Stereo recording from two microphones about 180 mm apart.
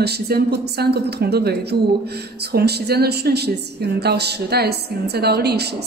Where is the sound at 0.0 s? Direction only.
65° right (ahead or behind).